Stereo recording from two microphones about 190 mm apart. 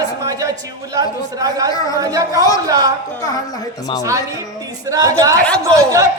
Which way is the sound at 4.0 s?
15° right (ahead or behind).